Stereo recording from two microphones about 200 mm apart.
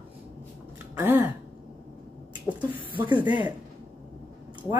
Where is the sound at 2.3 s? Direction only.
25° right (ahead or behind).